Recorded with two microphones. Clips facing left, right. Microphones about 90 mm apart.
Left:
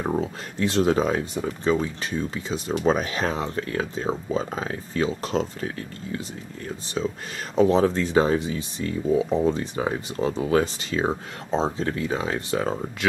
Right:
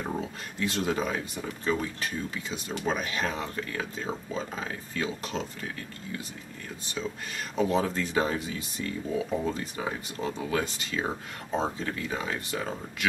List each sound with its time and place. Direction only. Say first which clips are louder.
0.1 s speech: left 7 dB; 35° left (ahead or behind)
7.5 s speech: left 8 dB; 35° left (ahead or behind)